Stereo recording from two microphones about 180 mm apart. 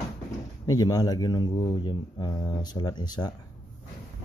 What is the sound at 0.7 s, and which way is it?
Speech, 20° left (ahead or behind).